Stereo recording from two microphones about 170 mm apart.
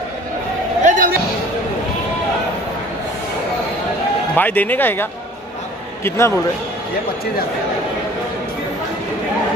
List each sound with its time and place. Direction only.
0.8 s a sound: 55° right (ahead or behind)
4.4 s speech: 10° left (ahead or behind)
6.0 s speech: 15° left (ahead or behind)